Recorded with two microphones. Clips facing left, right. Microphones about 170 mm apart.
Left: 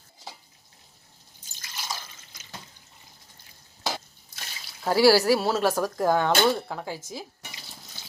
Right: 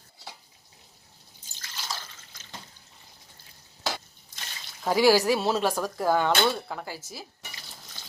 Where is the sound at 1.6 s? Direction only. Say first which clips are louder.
Left 1 dB; 15° left (ahead or behind).